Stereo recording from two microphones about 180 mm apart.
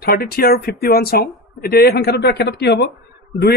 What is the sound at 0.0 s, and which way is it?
Speech, 60° left (ahead or behind).